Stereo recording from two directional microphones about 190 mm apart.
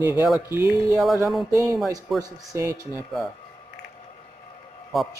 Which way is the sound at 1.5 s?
15° right (ahead or behind).